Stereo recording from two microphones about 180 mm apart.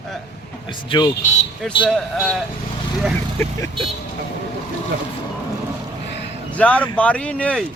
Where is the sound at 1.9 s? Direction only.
Centre (ahead or behind).